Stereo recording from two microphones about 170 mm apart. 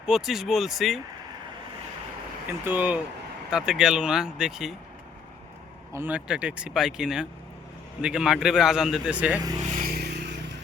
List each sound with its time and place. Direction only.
0.0 s speech: 5° right (ahead or behind)
2.5 s speech: 10° right (ahead or behind)
5.9 s speech: 10° right (ahead or behind)
9.6 s a sound: 50° right (ahead or behind)
9.9 s vehicle: 75° right (ahead or behind)